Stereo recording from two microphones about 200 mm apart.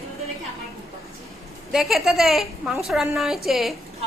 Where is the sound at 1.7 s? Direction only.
Centre (ahead or behind).